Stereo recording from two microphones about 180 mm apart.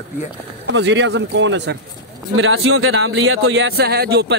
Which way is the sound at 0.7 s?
80° right.